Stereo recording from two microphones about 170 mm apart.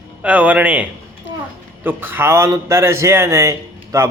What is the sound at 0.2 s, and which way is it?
A man's voice, 10° right (ahead or behind).